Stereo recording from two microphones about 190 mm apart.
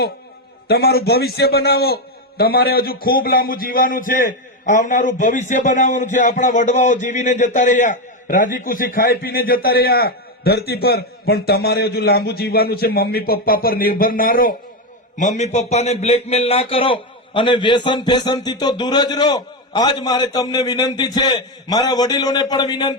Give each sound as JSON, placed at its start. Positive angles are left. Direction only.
{"t": 0.7, "sound": "a man's voice", "side_deg": 55}